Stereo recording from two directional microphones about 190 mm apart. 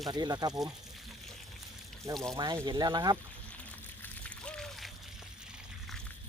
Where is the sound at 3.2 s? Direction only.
5° left (ahead or behind).